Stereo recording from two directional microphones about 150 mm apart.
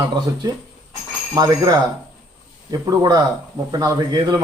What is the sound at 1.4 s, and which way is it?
A man's voice, 25° right (ahead or behind).